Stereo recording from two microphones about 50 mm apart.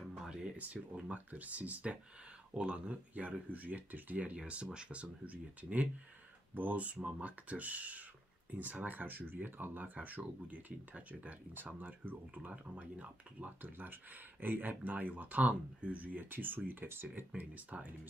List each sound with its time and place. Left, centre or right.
0.3 s a sound: centre
1.0 s speech: right
2.5 s speech: right
12.4 s speech: right
17.4 s speech: right